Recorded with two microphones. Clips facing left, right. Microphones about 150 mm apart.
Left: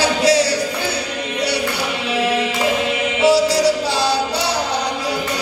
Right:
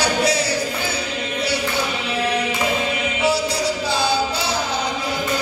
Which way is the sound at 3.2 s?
90° left.